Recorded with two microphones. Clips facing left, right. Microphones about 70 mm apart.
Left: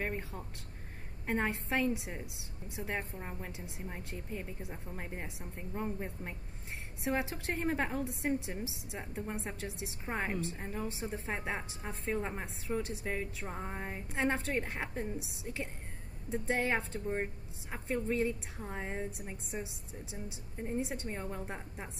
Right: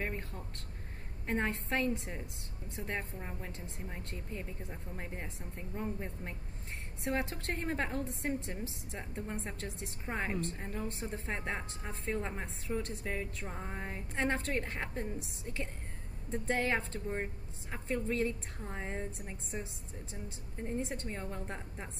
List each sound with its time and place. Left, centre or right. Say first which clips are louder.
0.0 s a sound: left 1 dB; centre
1.2 s a woman's voice: left 1 dB; centre
7.1 s a woman's voice: left 1 dB; centre